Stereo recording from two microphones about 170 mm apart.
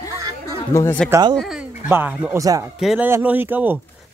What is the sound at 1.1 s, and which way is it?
Speech, 20° right (ahead or behind).